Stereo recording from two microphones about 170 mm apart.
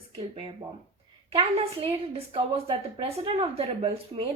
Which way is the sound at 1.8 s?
35° right (ahead or behind).